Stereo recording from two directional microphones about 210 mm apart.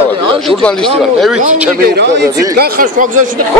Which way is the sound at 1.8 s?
50° right (ahead or behind).